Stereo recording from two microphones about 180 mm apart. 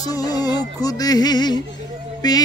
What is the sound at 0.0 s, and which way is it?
Music, 20° left (ahead or behind).